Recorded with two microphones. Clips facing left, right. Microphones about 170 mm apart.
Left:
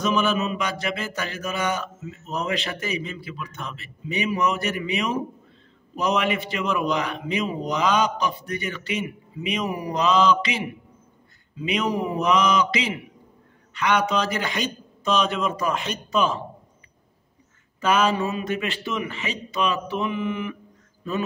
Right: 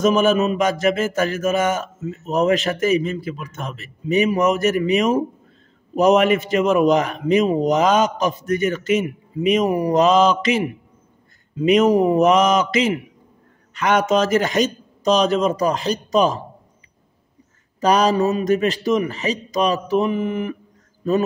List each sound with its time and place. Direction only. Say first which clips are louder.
0.0 s a man's voice: right 7 dB; 45° right (ahead or behind)
17.7 s a man's voice: right 5 dB; 40° right (ahead or behind)